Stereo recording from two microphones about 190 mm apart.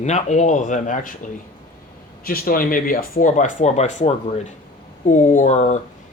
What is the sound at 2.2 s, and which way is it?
Speech, 50° left (ahead or behind).